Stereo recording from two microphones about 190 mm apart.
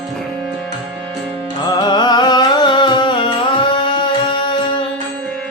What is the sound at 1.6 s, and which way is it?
Carnatic music, 20° left (ahead or behind).